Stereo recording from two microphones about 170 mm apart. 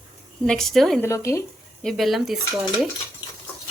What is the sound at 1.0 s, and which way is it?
Speech, 15° left (ahead or behind).